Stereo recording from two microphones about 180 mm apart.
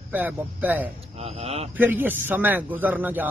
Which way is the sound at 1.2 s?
35° right (ahead or behind).